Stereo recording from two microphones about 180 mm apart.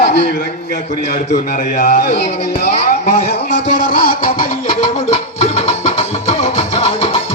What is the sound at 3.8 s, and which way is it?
Music, 55° left (ahead or behind).